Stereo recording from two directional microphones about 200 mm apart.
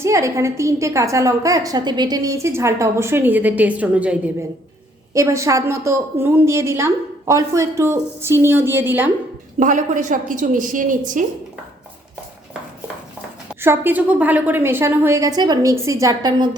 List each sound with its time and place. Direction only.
0.0 s a woman's voice: 15° right (ahead or behind)
9.6 s a woman's voice: 40° right (ahead or behind)
13.6 s a woman's voice: 10° right (ahead or behind)